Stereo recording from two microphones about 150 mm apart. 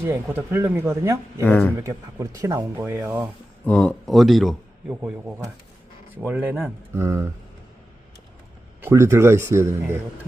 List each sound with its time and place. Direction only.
0.0 s speech: 15° right (ahead or behind)
1.5 s speech: 10° left (ahead or behind)
1.8 s speech: 20° right (ahead or behind)
3.7 s a man's voice: 5° left (ahead or behind); by 7.3 s 20° right (ahead or behind)
8.8 s speech: 20° right (ahead or behind)